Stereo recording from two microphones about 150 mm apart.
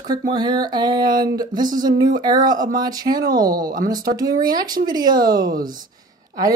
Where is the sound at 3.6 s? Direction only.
65° right (ahead or behind).